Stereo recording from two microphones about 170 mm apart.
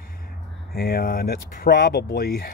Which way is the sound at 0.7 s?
65° left (ahead or behind).